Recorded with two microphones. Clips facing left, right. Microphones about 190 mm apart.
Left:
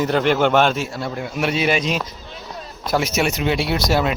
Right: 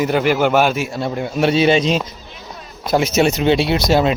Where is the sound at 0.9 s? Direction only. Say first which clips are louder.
Right 5 dB; 25° right (ahead or behind).